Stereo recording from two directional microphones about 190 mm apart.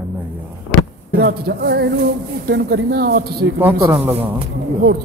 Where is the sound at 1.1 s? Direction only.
55° right (ahead or behind).